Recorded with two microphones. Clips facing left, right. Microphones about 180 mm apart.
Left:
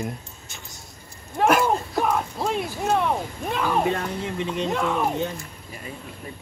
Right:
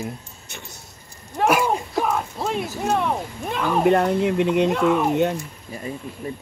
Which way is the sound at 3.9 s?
60° right (ahead or behind).